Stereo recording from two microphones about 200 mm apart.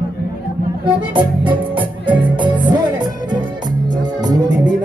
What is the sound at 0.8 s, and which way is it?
Music, 25° right (ahead or behind).